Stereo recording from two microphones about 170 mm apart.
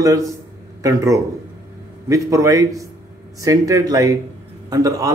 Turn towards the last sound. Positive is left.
turn(degrees=-20)  # may be behind; listen again after turning